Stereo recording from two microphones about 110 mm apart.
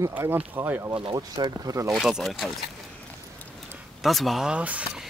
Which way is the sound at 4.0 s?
Centre (ahead or behind).